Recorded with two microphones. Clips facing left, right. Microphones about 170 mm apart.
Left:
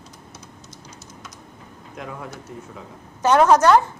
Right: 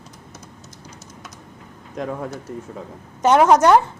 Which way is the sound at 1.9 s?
40° right (ahead or behind).